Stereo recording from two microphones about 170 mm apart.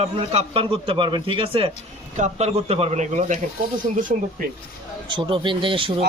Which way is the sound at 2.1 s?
45° right (ahead or behind).